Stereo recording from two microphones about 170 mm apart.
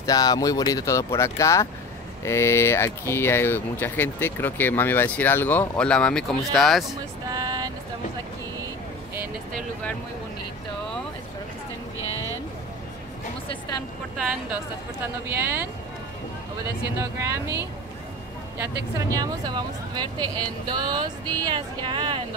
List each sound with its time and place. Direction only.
0.0 s speech: 20° left (ahead or behind); by 7.0 s centre (ahead or behind)
7.2 s vehicle: 25° right (ahead or behind)
13.5 s a sound: 20° left (ahead or behind)
14.1 s speech: 5° right (ahead or behind)
15.2 s speech: 15° right (ahead or behind)
17.0 s speech: 15° right (ahead or behind)
18.6 s speech: 20° right (ahead or behind)